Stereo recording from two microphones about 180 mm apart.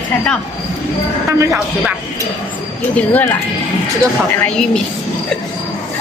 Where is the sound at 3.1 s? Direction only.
10° left (ahead or behind).